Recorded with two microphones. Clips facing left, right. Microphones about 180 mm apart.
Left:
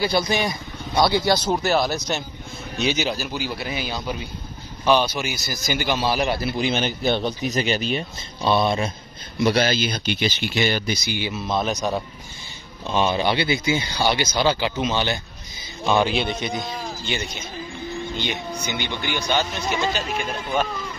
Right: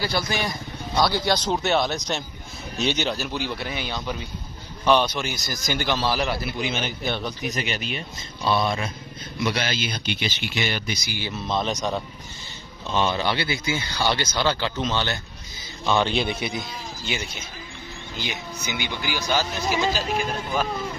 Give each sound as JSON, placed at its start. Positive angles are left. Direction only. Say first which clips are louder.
{"t": 0.0, "sound": "a man's voice", "louder": "left 4 dB", "side_deg": 15}
{"t": 6.5, "sound": "speech", "louder": "left 5 dB", "side_deg": 35}
{"t": 9.4, "sound": "speech", "louder": "left 6 dB", "side_deg": 40}
{"t": 11.1, "sound": "speech", "louder": "left 5 dB", "side_deg": 15}
{"t": 11.3, "sound": "a man's voice", "louder": "even", "side_deg": 5}
{"t": 12.8, "sound": "a man's voice", "louder": "left 3 dB", "side_deg": 15}
{"t": 16.4, "sound": "a man's voice", "louder": "left 3 dB", "side_deg": -5}